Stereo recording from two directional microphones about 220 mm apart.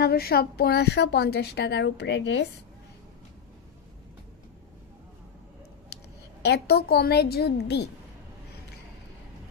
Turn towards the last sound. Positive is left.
turn(degrees=50)  # may be behind; listen again after turning